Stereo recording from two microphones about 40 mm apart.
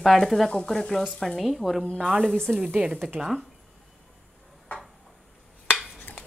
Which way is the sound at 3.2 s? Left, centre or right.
Right.